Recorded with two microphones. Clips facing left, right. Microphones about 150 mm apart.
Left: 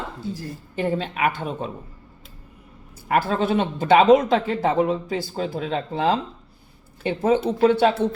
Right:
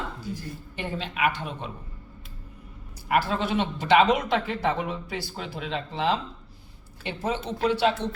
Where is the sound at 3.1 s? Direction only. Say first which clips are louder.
Left 4 dB; 45° left (ahead or behind).